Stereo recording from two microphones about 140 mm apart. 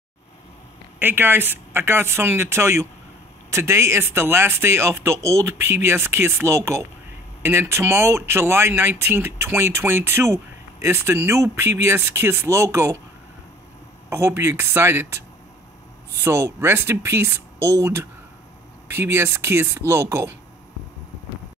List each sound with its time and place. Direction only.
0.9 s speech: 15° right (ahead or behind)
14.0 s speech: 20° right (ahead or behind)
16.3 s speech: 20° right (ahead or behind)